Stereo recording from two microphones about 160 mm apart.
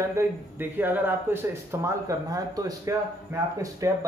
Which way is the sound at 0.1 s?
15° right (ahead or behind).